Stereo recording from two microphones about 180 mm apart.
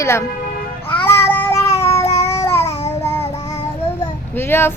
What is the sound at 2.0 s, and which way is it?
Babbling, 35° left (ahead or behind).